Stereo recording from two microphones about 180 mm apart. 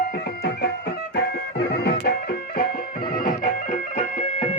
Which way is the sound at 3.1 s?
50° left (ahead or behind).